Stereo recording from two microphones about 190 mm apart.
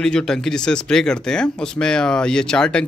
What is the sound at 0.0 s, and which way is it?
Speech, 5° left (ahead or behind).